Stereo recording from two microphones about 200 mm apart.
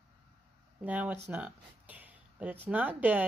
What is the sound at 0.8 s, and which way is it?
Speech, 5° right (ahead or behind).